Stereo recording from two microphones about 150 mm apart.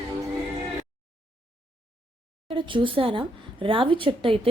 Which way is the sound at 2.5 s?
35° right (ahead or behind).